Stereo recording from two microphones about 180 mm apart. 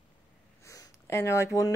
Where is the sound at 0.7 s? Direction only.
15° left (ahead or behind).